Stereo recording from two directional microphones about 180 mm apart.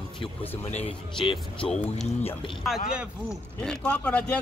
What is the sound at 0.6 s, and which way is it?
Speech, 35° left (ahead or behind).